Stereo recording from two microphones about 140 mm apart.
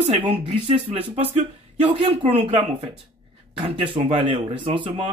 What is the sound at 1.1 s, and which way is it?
Speech, 45° right (ahead or behind).